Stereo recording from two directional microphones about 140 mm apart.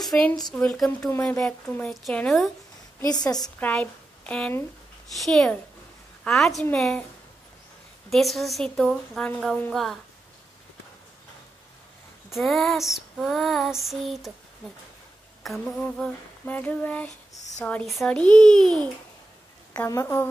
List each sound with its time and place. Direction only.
0.0 s a sound: centre (ahead or behind)
0.6 s female singing: 5° left (ahead or behind)
3.0 s a woman's voice: 25° left (ahead or behind)
3.5 s a woman's voice: 10° left (ahead or behind)
5.1 s female singing: centre (ahead or behind)
8.1 s female singing: centre (ahead or behind)
12.3 s female singing: centre (ahead or behind)
15.4 s female singing: centre (ahead or behind)
19.9 s a woman's voice: 20° left (ahead or behind)